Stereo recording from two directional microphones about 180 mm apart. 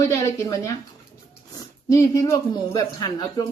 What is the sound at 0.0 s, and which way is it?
Speech, 20° left (ahead or behind).